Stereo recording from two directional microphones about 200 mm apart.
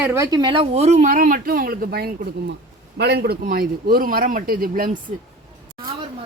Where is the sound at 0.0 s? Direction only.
15° right (ahead or behind); by 4.9 s 45° right (ahead or behind).